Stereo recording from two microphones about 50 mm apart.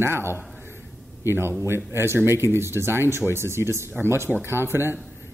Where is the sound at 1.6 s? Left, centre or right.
Right.